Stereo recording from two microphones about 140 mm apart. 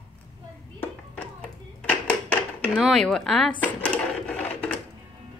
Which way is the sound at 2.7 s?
5° left (ahead or behind).